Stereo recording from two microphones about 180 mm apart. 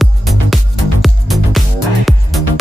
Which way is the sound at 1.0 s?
Centre (ahead or behind).